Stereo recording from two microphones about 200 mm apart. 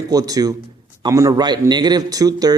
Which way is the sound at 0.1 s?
20° right (ahead or behind).